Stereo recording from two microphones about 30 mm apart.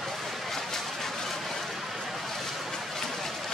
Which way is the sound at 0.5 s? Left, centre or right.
Centre.